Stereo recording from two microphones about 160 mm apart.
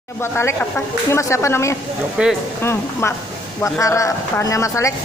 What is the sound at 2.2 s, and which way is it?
Speech, 5° right (ahead or behind).